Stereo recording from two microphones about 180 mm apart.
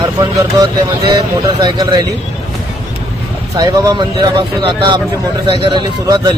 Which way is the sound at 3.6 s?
25° right (ahead or behind).